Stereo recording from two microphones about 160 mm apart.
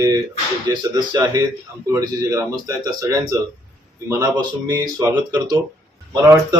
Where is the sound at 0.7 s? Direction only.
25° right (ahead or behind).